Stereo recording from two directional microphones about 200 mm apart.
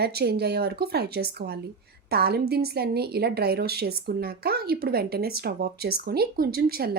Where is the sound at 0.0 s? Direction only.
55° right (ahead or behind).